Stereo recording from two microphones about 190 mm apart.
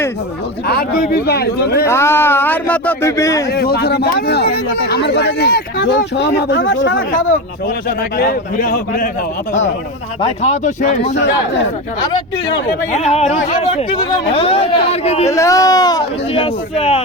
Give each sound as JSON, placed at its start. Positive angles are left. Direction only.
{"t": 0.7, "sound": "speech", "side_deg": 55}
{"t": 1.9, "sound": "speech", "side_deg": 15}
{"t": 3.5, "sound": "speech", "side_deg": 55}
{"t": 7.9, "sound": "a man's voice", "side_deg": 55}
{"t": 10.4, "sound": "speech", "side_deg": 35}
{"t": 11.1, "sound": "a man's voice", "side_deg": 70}
{"t": 12.9, "sound": "speech", "side_deg": 35}
{"t": 15.3, "sound": "speech", "side_deg": 15}
{"t": 16.3, "sound": "speech", "side_deg": 30}